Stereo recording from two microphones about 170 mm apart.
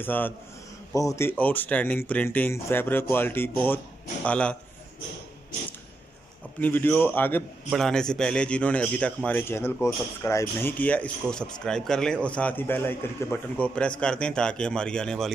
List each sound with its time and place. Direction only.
0.0 s a man's voice: 10° left (ahead or behind)
6.6 s a man's voice: 10° left (ahead or behind)